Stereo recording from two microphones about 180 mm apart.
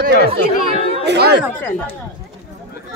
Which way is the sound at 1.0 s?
65° right (ahead or behind).